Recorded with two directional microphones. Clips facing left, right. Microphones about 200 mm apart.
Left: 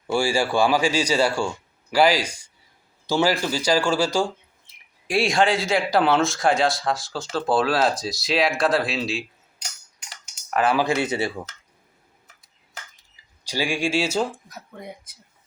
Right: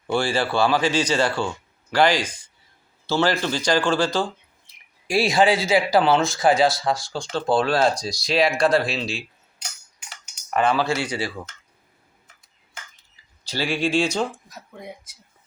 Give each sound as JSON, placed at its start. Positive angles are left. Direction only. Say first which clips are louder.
{"t": 0.1, "sound": "speech", "louder": "left 1 dB", "side_deg": 10}
{"t": 5.0, "sound": "speech", "louder": "right 2 dB", "side_deg": 0}
{"t": 10.5, "sound": "speech", "louder": "even", "side_deg": 5}
{"t": 10.8, "sound": "speech", "louder": "left 2 dB", "side_deg": 20}
{"t": 13.4, "sound": "speech", "louder": "right 1 dB", "side_deg": 15}